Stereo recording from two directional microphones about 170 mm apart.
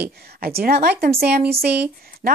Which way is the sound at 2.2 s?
60° right (ahead or behind).